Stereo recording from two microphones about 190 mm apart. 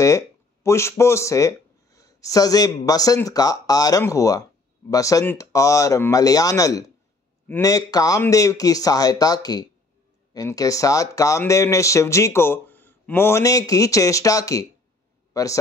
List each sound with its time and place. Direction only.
0.7 s a man's voice: 15° left (ahead or behind)